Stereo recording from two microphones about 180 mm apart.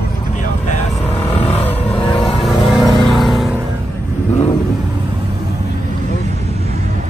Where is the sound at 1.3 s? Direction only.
35° left (ahead or behind).